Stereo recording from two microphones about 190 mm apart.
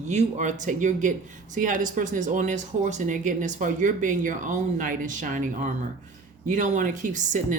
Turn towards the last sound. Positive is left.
turn(degrees=-40)  # may be behind; listen again after turning